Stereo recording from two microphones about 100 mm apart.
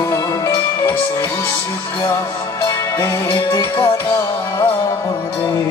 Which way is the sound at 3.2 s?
50° left (ahead or behind).